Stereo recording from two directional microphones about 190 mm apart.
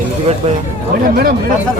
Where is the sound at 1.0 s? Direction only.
50° right (ahead or behind).